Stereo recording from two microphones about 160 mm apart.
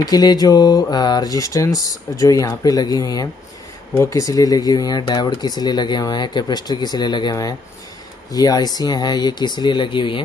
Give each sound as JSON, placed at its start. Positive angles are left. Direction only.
{"t": 0.0, "sound": "speech", "side_deg": 25}